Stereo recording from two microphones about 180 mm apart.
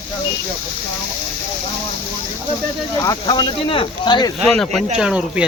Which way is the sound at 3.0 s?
20° left (ahead or behind).